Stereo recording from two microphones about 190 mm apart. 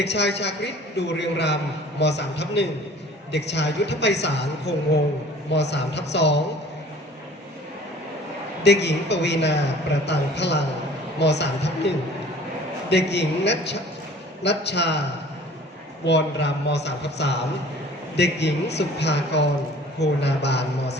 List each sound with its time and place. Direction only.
0.0 s a man's voice: 60° left (ahead or behind)
8.6 s a man's voice: 65° left (ahead or behind)
12.9 s a man's voice: 60° left (ahead or behind)
16.0 s a man's voice: 65° left (ahead or behind)